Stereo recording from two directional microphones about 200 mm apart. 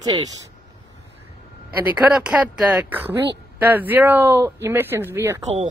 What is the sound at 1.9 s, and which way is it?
Speech, 5° right (ahead or behind).